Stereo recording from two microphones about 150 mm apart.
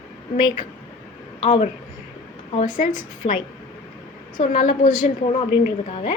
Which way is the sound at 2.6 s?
60° left (ahead or behind).